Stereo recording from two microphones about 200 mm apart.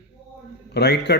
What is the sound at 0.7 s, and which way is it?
Speech, 55° left (ahead or behind).